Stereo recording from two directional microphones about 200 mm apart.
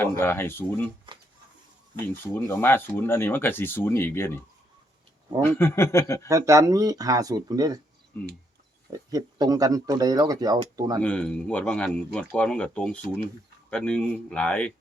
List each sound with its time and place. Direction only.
0.0 s speech: 10° left (ahead or behind)
2.2 s speech: 10° left (ahead or behind)
5.4 s speech: 10° left (ahead or behind)
6.2 s speech: 15° right (ahead or behind)
8.9 s speech: 20° right (ahead or behind)
11.0 s speech: 5° left (ahead or behind)